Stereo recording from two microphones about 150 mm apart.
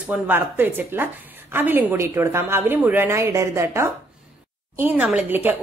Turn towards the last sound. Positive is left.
turn(degrees=-10)  # may be behind; listen again after turning